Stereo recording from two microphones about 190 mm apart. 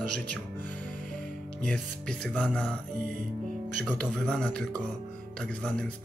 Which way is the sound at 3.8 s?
5° left (ahead or behind).